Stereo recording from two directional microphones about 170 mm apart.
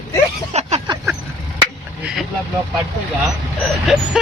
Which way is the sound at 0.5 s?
40° right (ahead or behind).